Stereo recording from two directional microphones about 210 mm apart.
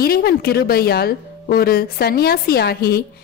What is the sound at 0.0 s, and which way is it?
A woman's voice, 45° left (ahead or behind).